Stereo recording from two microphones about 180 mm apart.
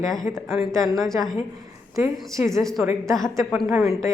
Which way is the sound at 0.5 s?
15° right (ahead or behind).